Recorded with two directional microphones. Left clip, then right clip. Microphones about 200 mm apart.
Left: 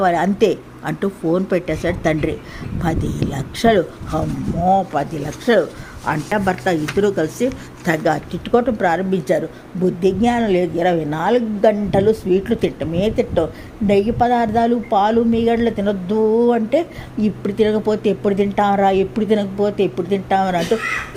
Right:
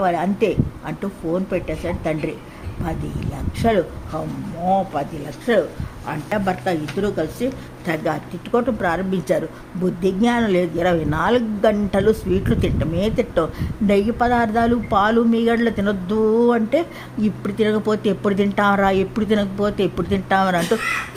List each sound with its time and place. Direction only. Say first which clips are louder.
0.0 s a woman's voice: left 4 dB; 15° left (ahead or behind); by 20.6 s 5° right (ahead or behind)